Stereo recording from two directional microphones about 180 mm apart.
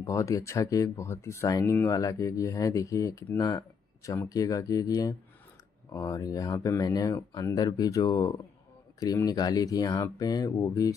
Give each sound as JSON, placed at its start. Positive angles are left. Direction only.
{"t": 0.0, "sound": "speech", "side_deg": 20}